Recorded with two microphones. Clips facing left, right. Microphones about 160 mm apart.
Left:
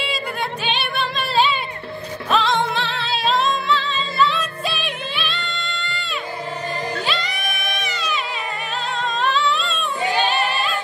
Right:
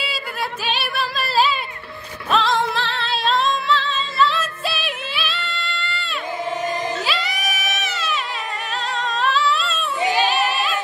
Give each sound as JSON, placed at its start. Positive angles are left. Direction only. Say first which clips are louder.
{"t": 0.7, "sound": "music", "louder": "even", "side_deg": 0}
{"t": 7.1, "sound": "music", "louder": "right 1 dB", "side_deg": -5}
{"t": 9.2, "sound": "a sound", "louder": "right 1 dB", "side_deg": -5}
{"t": 10.1, "sound": "choir", "louder": "even", "side_deg": 0}